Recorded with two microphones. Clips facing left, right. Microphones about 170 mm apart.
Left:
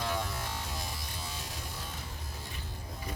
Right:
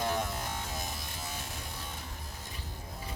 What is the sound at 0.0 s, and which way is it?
Music, 50° right (ahead or behind).